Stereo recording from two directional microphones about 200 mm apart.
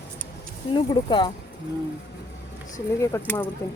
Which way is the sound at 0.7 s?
25° left (ahead or behind).